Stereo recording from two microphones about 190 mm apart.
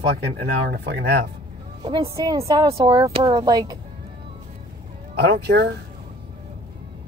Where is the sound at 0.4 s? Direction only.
60° right (ahead or behind).